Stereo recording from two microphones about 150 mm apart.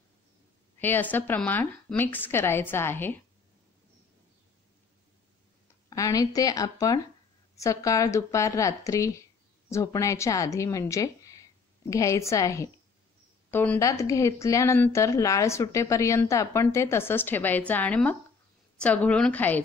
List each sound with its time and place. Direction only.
0.7 s a woman's voice: 15° left (ahead or behind)
5.9 s a woman's voice: 20° left (ahead or behind)